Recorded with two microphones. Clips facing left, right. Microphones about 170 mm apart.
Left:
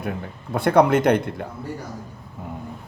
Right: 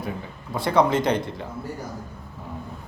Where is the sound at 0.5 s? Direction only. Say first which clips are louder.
Left 4 dB; 60° left (ahead or behind).